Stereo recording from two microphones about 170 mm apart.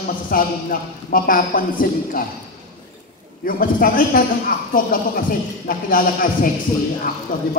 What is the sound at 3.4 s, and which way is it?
A woman's voice, 55° left (ahead or behind).